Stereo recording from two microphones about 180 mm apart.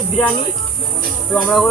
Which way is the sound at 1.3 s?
Centre (ahead or behind).